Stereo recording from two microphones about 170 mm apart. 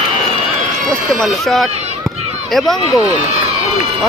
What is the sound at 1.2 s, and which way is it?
Speech, centre (ahead or behind).